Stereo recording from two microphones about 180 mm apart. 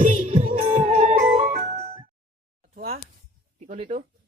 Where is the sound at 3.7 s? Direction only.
40° right (ahead or behind).